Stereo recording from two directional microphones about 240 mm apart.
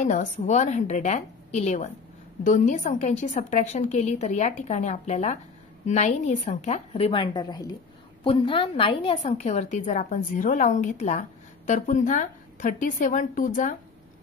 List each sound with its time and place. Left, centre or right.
0.0 s a woman's voice: left